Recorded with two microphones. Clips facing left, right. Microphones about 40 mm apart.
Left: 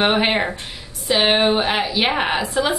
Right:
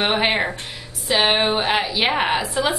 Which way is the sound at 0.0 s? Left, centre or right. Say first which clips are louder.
Left 2 dB; centre.